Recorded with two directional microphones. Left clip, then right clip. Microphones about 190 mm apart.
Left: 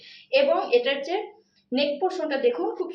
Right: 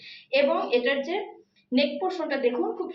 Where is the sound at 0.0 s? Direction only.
20° right (ahead or behind).